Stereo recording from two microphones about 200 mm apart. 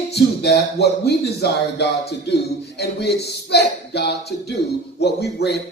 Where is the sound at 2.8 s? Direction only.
55° left (ahead or behind).